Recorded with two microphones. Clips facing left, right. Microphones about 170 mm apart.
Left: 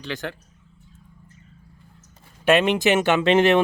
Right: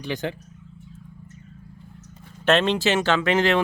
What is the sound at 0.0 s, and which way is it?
Speech, 15° right (ahead or behind).